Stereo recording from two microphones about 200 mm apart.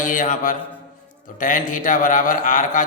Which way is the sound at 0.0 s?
40° left (ahead or behind).